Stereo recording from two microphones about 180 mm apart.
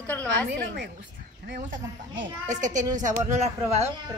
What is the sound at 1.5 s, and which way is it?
Speech, 85° right.